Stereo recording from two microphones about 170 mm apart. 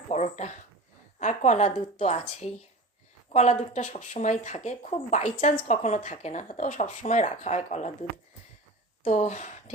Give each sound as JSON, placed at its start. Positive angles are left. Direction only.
{"t": 0.1, "sound": "speech", "side_deg": 40}
{"t": 9.0, "sound": "speech", "side_deg": 40}